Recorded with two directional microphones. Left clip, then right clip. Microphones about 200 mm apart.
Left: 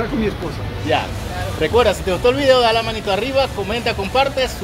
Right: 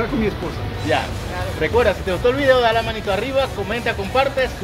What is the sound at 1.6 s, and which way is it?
Speech, 20° left (ahead or behind).